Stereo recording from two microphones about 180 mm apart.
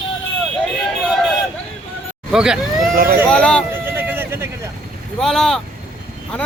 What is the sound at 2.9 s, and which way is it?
Speech, 55° right (ahead or behind).